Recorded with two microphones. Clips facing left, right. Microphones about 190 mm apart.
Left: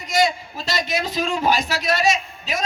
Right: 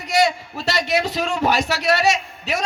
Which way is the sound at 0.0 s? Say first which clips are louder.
Right 1 dB; 65° right (ahead or behind).